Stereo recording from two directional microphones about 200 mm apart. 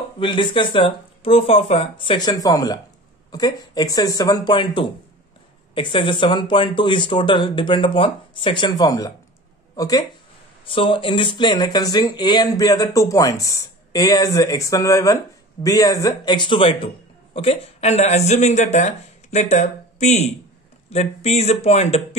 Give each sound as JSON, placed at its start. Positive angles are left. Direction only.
{"t": 0.2, "sound": "a man's voice", "side_deg": 25}